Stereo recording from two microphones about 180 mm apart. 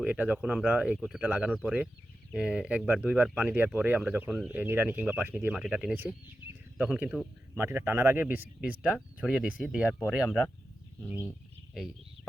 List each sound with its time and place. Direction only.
0.0 s speech: 5° right (ahead or behind)